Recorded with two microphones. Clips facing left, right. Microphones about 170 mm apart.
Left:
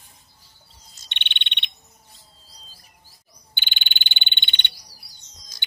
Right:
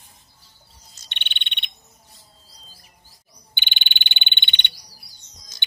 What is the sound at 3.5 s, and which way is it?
Frog, 20° right (ahead or behind).